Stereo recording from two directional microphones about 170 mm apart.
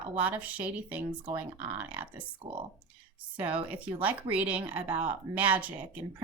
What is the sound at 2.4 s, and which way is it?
Speech, 35° right (ahead or behind).